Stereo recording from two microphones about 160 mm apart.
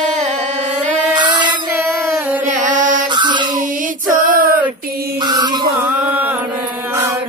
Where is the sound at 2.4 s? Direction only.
55° right (ahead or behind).